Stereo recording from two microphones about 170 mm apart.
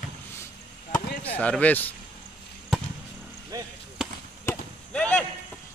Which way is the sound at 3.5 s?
20° right (ahead or behind).